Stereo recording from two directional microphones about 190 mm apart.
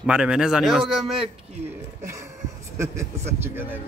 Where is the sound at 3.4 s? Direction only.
10° right (ahead or behind).